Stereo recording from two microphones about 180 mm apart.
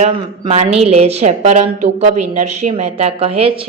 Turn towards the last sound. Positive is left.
turn(degrees=-35)  # may be behind; listen again after turning